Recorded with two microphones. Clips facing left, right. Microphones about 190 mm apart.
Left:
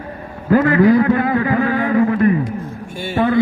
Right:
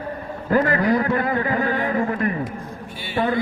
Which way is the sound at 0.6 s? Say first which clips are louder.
Left 7 dB; 40° right (ahead or behind).